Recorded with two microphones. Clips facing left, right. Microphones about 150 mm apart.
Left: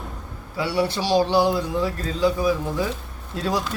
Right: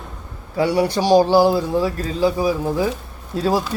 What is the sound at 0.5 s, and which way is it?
Speech, 40° right (ahead or behind).